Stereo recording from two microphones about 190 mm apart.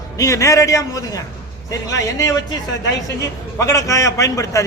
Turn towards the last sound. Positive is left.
turn(degrees=15)  # may be behind; listen again after turning